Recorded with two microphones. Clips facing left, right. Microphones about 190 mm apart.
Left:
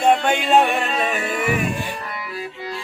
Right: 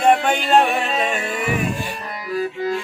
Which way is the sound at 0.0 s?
Centre (ahead or behind).